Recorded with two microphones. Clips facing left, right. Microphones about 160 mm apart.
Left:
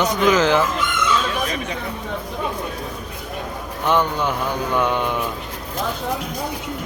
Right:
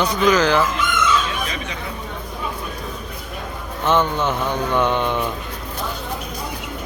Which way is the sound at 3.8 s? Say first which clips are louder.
Right 1 dB; 10° left (ahead or behind).